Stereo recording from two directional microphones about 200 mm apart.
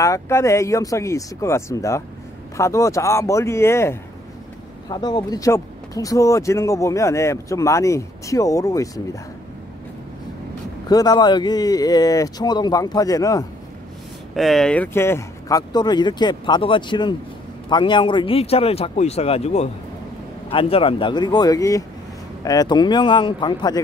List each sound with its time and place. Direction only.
0.0 s speech: 15° left (ahead or behind)
10.9 s speech: 20° left (ahead or behind)
14.3 s speech: centre (ahead or behind); by 23.8 s 20° left (ahead or behind)